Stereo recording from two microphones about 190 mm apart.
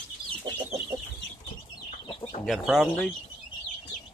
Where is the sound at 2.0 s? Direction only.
25° left (ahead or behind).